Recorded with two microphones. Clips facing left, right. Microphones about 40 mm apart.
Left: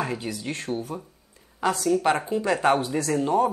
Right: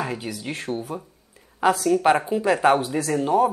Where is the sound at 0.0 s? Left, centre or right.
Centre.